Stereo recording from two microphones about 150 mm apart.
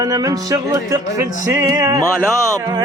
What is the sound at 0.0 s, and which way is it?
Music, 25° right (ahead or behind).